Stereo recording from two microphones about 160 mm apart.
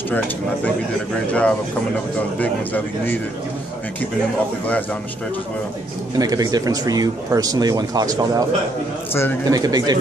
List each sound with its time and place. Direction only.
2.3 s a man's voice: 10° left (ahead or behind)
6.1 s speech: 25° right (ahead or behind)
9.1 s a man's voice: 15° left (ahead or behind)
9.5 s speech: 25° right (ahead or behind)